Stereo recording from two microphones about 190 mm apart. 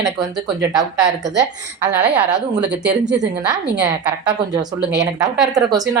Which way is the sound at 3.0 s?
65° right (ahead or behind).